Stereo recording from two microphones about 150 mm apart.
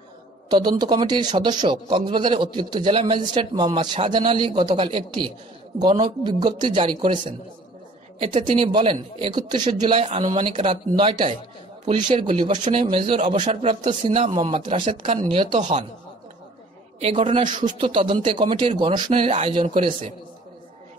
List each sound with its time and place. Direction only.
0.5 s a man's voice: 25° right (ahead or behind)
17.0 s speech: 40° right (ahead or behind)